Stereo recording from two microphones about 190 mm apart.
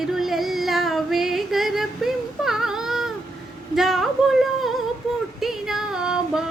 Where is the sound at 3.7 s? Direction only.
Centre (ahead or behind).